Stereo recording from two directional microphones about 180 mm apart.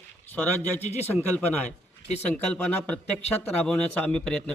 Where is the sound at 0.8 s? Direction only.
35° left (ahead or behind).